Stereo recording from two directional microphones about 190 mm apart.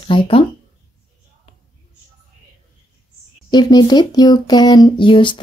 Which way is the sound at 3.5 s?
20° left (ahead or behind).